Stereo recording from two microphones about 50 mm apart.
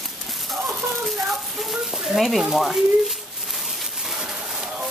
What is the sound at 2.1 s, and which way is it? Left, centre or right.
Speech, centre.